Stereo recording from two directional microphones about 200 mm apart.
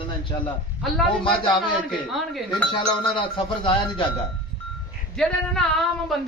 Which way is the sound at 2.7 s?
25° left (ahead or behind).